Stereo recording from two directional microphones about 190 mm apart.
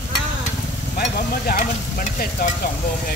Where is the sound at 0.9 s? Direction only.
50° left (ahead or behind).